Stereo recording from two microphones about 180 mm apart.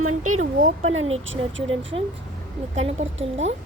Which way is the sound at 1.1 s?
90° right.